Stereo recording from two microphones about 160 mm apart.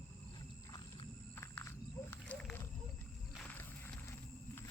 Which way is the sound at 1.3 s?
15° left (ahead or behind).